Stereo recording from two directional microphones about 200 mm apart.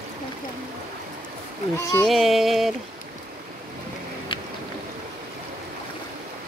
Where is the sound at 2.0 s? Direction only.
Centre (ahead or behind).